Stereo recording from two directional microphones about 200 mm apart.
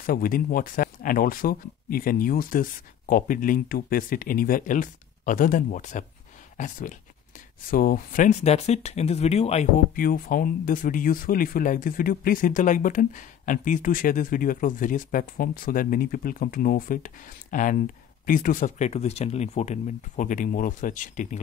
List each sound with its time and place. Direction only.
0.0 s speech: 45° left (ahead or behind)